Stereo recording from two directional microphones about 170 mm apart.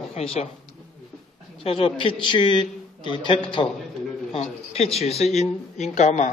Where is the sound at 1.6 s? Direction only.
35° left (ahead or behind).